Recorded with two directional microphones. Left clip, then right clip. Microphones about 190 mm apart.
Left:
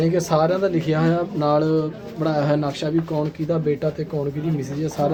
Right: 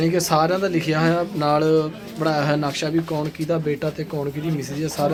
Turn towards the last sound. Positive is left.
turn(degrees=10)  # may be behind; listen again after turning